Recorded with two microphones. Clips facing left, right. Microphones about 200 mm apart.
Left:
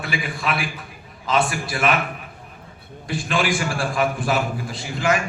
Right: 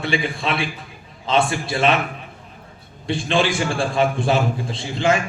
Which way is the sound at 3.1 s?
25° right (ahead or behind).